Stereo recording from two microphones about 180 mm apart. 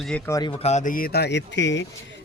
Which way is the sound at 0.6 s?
40° left (ahead or behind).